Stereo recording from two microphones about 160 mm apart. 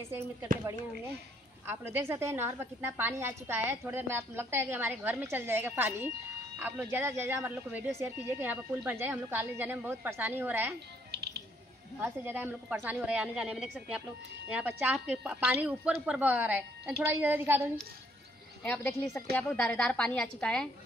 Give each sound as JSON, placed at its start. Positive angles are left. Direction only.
{"t": 1.7, "sound": "a woman's voice", "side_deg": -15}
{"t": 11.1, "sound": "music", "side_deg": -90}
{"t": 12.0, "sound": "a woman's voice", "side_deg": -15}
{"t": 18.6, "sound": "a woman's voice", "side_deg": 10}